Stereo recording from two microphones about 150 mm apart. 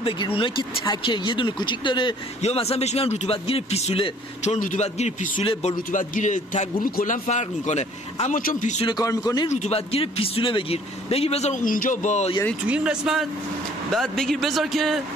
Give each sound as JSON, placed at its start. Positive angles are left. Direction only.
{"t": 0.0, "sound": "speech", "side_deg": 35}
{"t": 2.4, "sound": "speech", "side_deg": 40}
{"t": 4.6, "sound": "a man's voice", "side_deg": 55}
{"t": 5.4, "sound": "a man's voice", "side_deg": 40}
{"t": 8.4, "sound": "a man's voice", "side_deg": 65}
{"t": 8.8, "sound": "a man's voice", "side_deg": 25}
{"t": 9.5, "sound": "a man's voice", "side_deg": 45}
{"t": 12.6, "sound": "a man's voice", "side_deg": -5}